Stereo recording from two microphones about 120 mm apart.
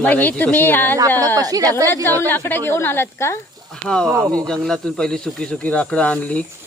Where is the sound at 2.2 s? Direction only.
15° left (ahead or behind).